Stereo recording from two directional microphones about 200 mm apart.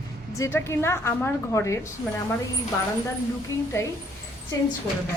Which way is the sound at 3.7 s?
15° left (ahead or behind).